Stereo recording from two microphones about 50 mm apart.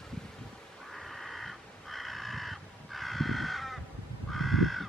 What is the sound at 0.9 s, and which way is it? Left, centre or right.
Crow, centre.